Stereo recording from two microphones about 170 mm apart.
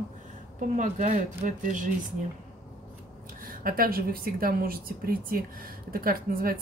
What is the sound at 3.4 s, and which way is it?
A woman's voice, 55° right (ahead or behind).